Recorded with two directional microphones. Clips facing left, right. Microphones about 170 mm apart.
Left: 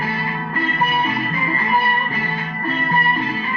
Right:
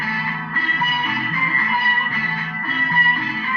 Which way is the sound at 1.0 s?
25° left (ahead or behind).